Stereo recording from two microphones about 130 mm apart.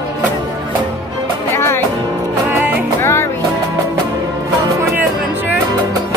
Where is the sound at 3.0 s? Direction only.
20° left (ahead or behind).